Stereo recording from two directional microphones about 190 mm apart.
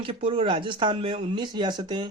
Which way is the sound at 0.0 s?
30° right (ahead or behind).